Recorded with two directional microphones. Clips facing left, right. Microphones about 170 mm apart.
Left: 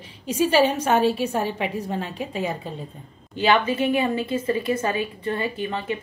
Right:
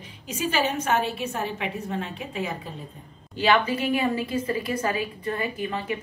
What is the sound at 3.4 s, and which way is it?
A woman's voice, 25° left (ahead or behind).